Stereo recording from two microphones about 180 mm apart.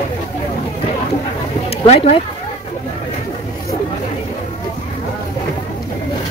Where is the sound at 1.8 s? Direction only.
35° left (ahead or behind).